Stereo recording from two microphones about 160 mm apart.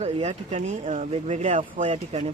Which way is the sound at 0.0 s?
45° right (ahead or behind).